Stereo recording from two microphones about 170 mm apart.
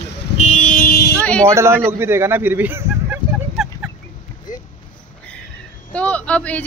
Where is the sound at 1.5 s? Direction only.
15° right (ahead or behind).